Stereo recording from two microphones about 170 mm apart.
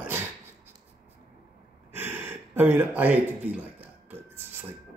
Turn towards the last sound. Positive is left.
turn(degrees=-10)  # may be behind; listen again after turning